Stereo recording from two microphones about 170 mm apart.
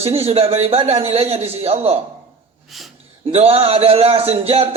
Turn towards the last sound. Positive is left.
turn(degrees=-35)  # may be behind; listen again after turning